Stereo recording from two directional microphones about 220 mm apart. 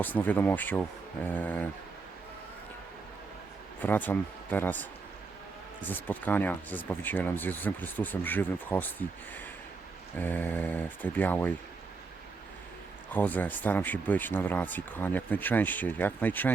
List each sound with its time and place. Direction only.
0.0 s speech: 10° left (ahead or behind)
3.8 s speech: 10° left (ahead or behind)
13.1 s speech: 10° left (ahead or behind)